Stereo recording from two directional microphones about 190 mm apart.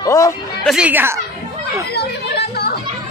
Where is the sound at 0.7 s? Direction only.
5° right (ahead or behind).